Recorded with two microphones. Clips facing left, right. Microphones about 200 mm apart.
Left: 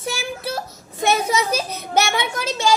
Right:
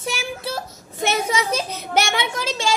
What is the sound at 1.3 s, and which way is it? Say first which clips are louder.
A child's voice: left 1 dB; 25° right (ahead or behind).